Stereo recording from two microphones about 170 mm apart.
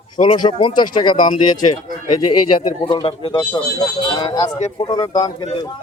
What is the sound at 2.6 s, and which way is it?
Music, 25° left (ahead or behind).